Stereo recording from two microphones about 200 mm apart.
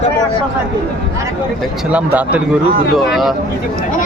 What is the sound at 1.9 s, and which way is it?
Speech, 5° right (ahead or behind).